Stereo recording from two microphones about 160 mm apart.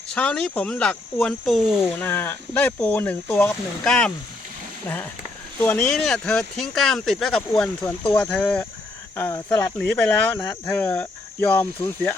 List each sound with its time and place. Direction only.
0.1 s speech: 5° left (ahead or behind)
2.0 s speech: 10° left (ahead or behind)
5.5 s speech: 10° left (ahead or behind)
7.8 s speech: 15° left (ahead or behind)
8.1 s speech: 5° left (ahead or behind)